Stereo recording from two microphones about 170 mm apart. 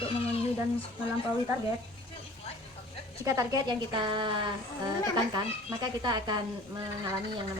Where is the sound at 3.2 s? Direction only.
15° right (ahead or behind).